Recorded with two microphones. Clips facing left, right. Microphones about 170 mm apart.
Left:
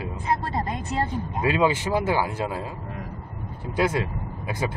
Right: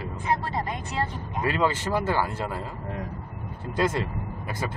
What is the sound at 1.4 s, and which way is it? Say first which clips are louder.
Speech: left 3 dB; 15° left (ahead or behind).